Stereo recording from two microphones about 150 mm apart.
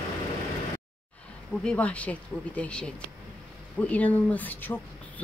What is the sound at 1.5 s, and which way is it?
Speech, 5° left (ahead or behind).